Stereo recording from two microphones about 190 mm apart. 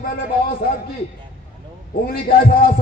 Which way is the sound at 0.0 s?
50° left (ahead or behind).